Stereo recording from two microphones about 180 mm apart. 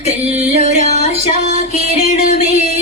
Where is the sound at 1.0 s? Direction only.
40° left (ahead or behind).